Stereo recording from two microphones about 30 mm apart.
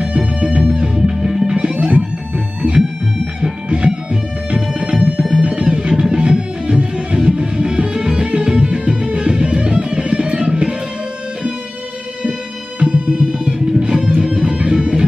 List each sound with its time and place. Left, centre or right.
0.0 s music: right; by 1.6 s centre
1.6 s music: right
3.3 s music: right
4.6 s music: centre
5.4 s music: right
12.8 s music: right
13.5 s music: right